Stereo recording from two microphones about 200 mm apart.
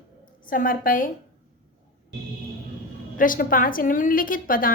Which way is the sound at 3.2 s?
45° left (ahead or behind).